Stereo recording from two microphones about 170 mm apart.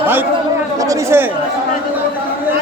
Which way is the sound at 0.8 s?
20° right (ahead or behind).